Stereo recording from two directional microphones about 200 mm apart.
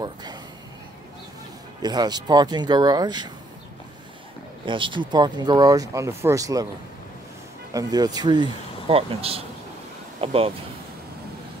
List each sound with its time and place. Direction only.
0.0 s a sound: 20° right (ahead or behind)
1.8 s speech: 20° right (ahead or behind)
4.6 s speech: 25° right (ahead or behind)
7.7 s speech: 20° right (ahead or behind)